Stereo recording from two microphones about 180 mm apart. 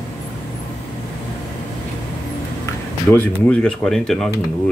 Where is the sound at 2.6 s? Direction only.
15° left (ahead or behind).